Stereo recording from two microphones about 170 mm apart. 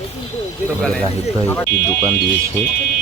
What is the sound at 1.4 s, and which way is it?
Speech, 10° left (ahead or behind).